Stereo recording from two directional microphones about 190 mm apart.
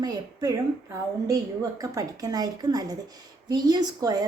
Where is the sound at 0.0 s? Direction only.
20° right (ahead or behind).